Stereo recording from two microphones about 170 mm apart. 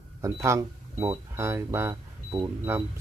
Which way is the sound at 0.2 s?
15° right (ahead or behind).